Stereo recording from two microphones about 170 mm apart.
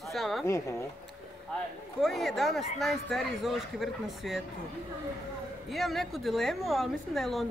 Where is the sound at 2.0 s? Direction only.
Centre (ahead or behind).